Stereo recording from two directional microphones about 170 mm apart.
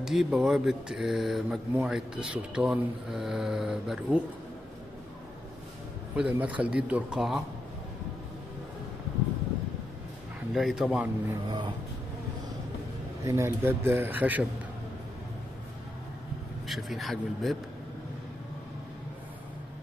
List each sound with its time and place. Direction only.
0.0 s speech: centre (ahead or behind)
6.1 s speech: 10° right (ahead or behind)
10.5 s speech: centre (ahead or behind)
11.4 s speech: 25° right (ahead or behind)
13.2 s speech: 15° right (ahead or behind)
16.6 s speech: centre (ahead or behind)